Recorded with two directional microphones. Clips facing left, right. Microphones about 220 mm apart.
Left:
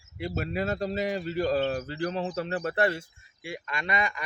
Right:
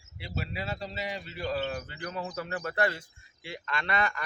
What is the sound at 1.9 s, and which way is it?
Speech, 30° left (ahead or behind).